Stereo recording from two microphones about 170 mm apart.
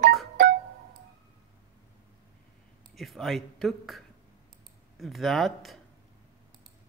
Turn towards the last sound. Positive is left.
turn(degrees=0)  # may be behind; listen again after turning